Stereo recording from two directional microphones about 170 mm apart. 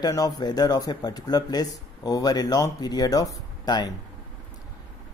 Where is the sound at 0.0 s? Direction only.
20° left (ahead or behind).